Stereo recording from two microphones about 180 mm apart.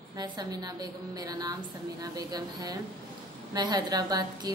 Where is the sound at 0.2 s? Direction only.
20° right (ahead or behind).